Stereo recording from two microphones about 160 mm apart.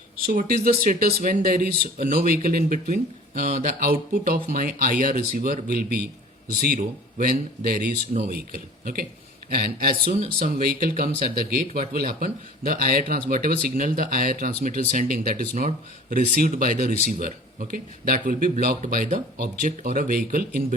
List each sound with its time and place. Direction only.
0.3 s a man's voice: 60° right (ahead or behind)